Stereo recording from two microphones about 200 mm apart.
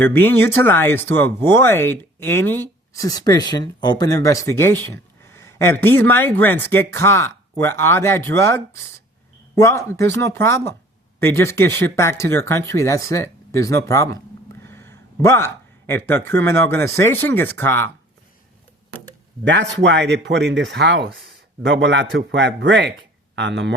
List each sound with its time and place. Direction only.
0.0 s speech: 10° left (ahead or behind)
14.6 s a sound: 10° left (ahead or behind)
16.0 s speech: 10° left (ahead or behind)
19.5 s speech: 60° right (ahead or behind)